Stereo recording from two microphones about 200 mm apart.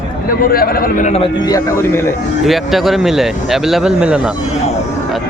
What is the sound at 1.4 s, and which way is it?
Speech, 15° left (ahead or behind).